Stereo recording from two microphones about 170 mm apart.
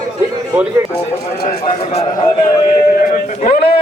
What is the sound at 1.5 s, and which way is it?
Speech, 35° left (ahead or behind).